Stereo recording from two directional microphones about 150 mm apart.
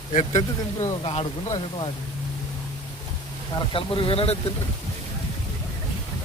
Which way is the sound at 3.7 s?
35° left (ahead or behind).